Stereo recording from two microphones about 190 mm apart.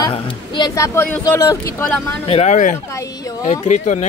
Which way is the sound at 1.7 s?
5° left (ahead or behind).